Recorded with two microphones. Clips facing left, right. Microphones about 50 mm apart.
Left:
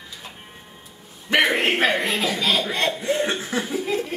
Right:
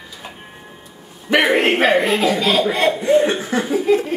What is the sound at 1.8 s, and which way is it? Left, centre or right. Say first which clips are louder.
Speech: right 6 dB; centre.